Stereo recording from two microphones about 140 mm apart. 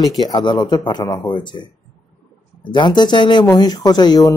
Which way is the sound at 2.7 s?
35° left (ahead or behind).